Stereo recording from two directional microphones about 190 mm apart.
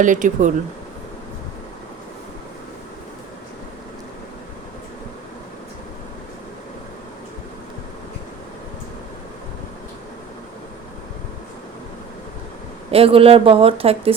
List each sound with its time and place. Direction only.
0.0 s speech: 40° right (ahead or behind)
12.9 s speech: 30° right (ahead or behind)